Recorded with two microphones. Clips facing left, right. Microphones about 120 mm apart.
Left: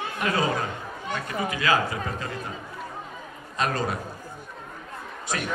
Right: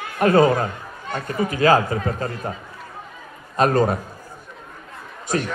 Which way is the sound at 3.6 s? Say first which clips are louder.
Right 9 dB; 45° right (ahead or behind).